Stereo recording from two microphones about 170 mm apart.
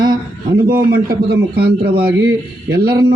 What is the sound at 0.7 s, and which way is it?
Speech, 60° right (ahead or behind).